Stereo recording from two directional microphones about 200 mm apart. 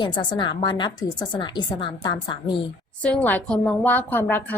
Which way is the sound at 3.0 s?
5° left (ahead or behind).